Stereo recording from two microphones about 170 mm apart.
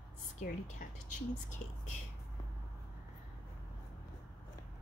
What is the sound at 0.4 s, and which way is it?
A woman's voice, 45° left (ahead or behind).